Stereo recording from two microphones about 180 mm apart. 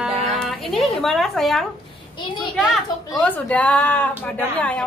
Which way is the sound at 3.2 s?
5° left (ahead or behind).